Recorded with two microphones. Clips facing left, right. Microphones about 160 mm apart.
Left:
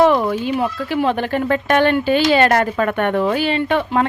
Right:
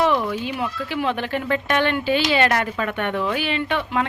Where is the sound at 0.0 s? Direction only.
45° left (ahead or behind).